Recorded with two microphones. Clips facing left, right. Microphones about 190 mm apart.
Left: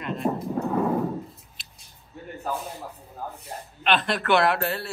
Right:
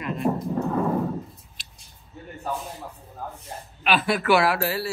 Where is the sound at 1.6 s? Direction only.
Centre (ahead or behind).